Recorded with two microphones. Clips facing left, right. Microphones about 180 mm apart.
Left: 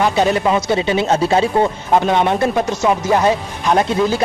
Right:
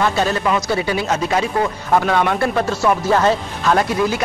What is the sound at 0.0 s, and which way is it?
A man's voice, 15° left (ahead or behind).